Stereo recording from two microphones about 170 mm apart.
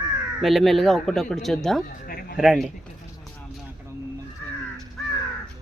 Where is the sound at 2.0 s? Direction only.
60° left (ahead or behind).